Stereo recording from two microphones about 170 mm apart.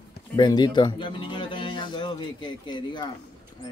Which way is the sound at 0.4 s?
25° left (ahead or behind).